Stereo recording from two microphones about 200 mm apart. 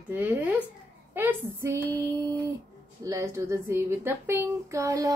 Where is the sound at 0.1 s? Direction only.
10° right (ahead or behind).